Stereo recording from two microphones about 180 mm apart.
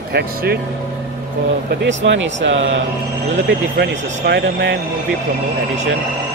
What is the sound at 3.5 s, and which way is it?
Speech, 65° right (ahead or behind).